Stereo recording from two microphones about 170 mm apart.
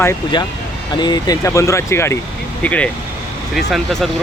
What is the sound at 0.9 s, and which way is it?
Speech, 25° left (ahead or behind).